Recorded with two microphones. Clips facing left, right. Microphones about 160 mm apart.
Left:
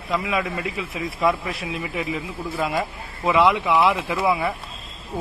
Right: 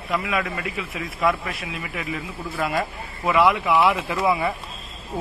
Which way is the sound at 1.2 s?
25° left (ahead or behind).